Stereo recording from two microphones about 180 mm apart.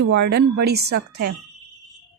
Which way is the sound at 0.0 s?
75° right (ahead or behind).